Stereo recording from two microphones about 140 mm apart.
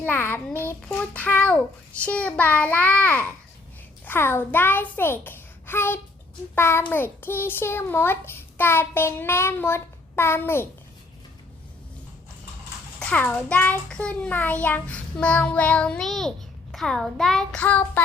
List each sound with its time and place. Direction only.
0.0 s a child's voice: 15° left (ahead or behind)
13.0 s a child's voice: 10° left (ahead or behind)